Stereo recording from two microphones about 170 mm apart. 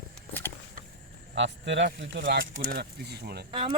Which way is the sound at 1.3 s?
90° right.